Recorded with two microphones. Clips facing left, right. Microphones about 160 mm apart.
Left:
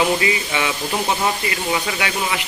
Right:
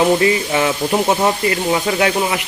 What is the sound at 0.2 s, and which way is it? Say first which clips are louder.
Speech: right 6 dB; 45° right (ahead or behind).